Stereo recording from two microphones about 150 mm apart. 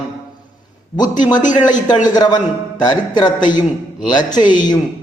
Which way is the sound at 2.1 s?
25° left (ahead or behind).